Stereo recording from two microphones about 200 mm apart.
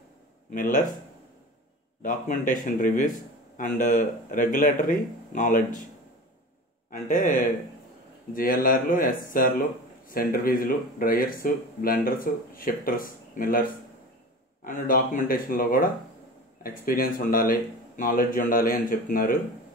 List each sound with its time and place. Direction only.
0.5 s speech: 40° left (ahead or behind)
2.0 s speech: 40° left (ahead or behind)
6.9 s speech: 40° left (ahead or behind)